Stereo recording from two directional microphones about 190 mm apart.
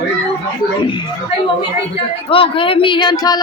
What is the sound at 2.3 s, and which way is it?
Speech, 30° left (ahead or behind).